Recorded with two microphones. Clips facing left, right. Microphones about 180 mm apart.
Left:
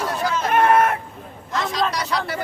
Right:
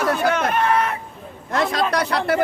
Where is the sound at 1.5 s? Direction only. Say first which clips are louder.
Right 3 dB; 60° right (ahead or behind).